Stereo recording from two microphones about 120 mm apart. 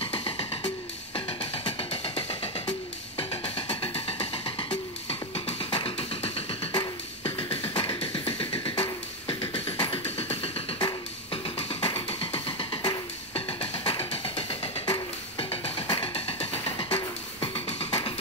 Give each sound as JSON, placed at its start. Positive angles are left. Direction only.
{"t": 0.0, "sound": "music", "side_deg": 50}